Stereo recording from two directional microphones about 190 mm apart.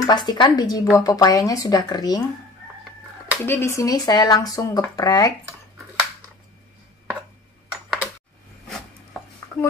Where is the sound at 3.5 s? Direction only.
15° left (ahead or behind).